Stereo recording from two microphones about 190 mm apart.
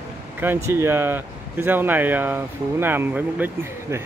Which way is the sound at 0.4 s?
10° right (ahead or behind).